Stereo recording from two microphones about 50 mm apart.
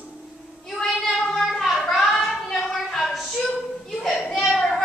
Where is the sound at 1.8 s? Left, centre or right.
Centre.